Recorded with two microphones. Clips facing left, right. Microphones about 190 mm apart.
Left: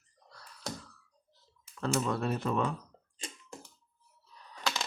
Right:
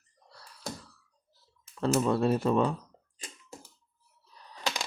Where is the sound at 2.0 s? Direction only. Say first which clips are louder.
Right 7 dB; 30° right (ahead or behind).